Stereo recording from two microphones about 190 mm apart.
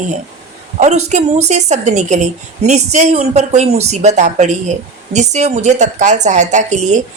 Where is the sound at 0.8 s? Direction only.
40° right (ahead or behind).